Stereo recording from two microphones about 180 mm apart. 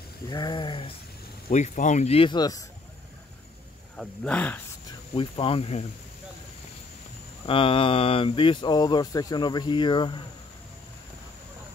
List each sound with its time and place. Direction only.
0.3 s speech: 25° left (ahead or behind)
1.5 s speech: 40° left (ahead or behind); by 2.6 s 20° left (ahead or behind)
3.9 s speech: 5° left (ahead or behind)
5.1 s speech: 30° left (ahead or behind)
7.4 s speech: 30° left (ahead or behind)